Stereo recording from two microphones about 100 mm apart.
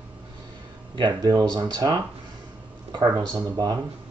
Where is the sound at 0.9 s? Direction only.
45° right (ahead or behind).